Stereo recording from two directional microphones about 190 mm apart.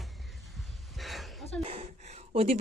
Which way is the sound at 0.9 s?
Centre (ahead or behind).